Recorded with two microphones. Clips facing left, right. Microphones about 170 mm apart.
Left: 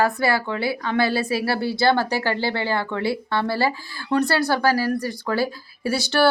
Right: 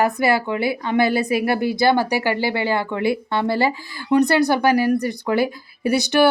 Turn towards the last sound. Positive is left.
turn(degrees=-15)  # may be behind; listen again after turning